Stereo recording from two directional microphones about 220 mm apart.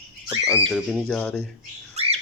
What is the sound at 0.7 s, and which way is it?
Speech, centre (ahead or behind).